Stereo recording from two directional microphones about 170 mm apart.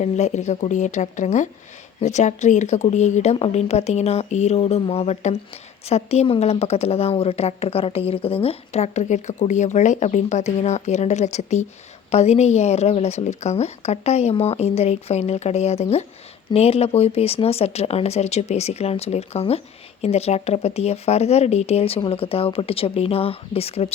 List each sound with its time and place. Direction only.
0.0 s speech: 40° left (ahead or behind)